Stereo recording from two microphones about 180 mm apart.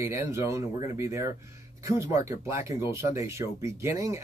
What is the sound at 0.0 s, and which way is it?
Speech, 15° right (ahead or behind).